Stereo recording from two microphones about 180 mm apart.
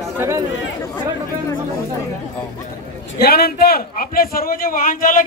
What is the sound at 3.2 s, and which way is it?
A man's voice, 60° left (ahead or behind).